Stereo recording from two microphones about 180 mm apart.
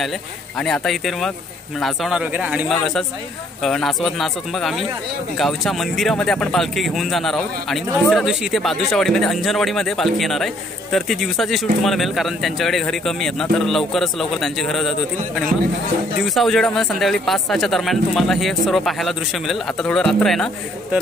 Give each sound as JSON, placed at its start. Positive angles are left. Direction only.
{"t": 0.6, "sound": "speech", "side_deg": 0}